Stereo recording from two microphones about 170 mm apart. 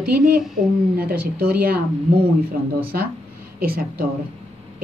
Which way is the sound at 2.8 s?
60° right (ahead or behind).